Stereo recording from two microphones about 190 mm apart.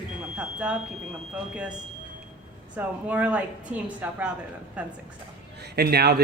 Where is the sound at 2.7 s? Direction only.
5° right (ahead or behind).